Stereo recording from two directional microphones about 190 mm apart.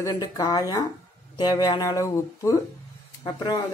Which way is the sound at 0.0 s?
20° left (ahead or behind).